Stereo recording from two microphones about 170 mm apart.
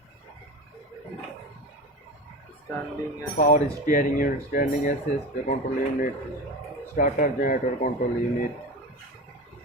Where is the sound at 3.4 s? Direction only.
50° left (ahead or behind).